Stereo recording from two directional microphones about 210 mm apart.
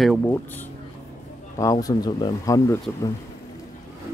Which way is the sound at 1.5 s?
15° left (ahead or behind).